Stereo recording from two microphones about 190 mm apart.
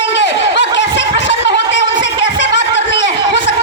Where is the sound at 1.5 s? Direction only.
70° left (ahead or behind).